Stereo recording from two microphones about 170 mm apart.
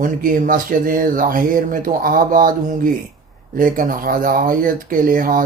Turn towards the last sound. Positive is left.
turn(degrees=-55)  # may be behind; listen again after turning